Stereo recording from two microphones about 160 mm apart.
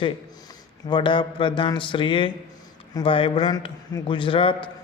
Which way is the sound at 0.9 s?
30° left (ahead or behind).